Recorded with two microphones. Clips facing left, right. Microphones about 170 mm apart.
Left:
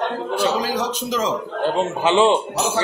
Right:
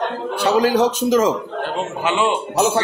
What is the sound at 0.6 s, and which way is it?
Speech, 50° right (ahead or behind).